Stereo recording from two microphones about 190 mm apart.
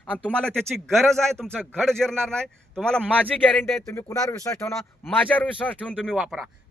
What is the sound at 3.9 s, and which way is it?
A man's voice, 15° left (ahead or behind).